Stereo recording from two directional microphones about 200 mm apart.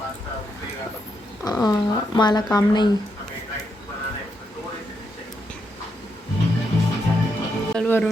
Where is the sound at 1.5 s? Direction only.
20° left (ahead or behind).